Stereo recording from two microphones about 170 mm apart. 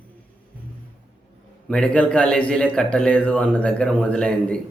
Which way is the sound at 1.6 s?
5° left (ahead or behind).